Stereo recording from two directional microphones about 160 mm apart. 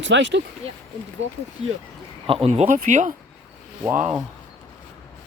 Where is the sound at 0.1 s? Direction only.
90° right.